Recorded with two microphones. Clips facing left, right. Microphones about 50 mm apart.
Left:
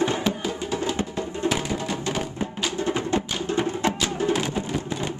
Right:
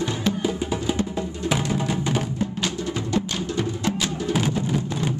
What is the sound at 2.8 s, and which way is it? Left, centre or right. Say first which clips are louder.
Music: left 4 dB; left.